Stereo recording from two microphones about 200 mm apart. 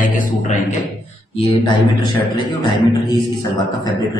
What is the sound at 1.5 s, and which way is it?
Speech, 20° left (ahead or behind).